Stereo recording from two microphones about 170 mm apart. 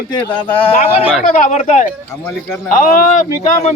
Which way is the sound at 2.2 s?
15° left (ahead or behind).